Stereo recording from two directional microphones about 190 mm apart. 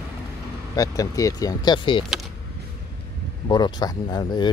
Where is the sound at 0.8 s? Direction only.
20° left (ahead or behind).